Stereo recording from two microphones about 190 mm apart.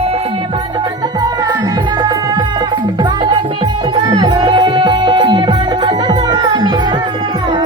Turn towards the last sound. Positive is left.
turn(degrees=-25)  # may be behind; listen again after turning